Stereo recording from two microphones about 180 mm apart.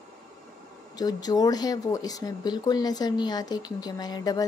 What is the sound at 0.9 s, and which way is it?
Speech, 20° left (ahead or behind).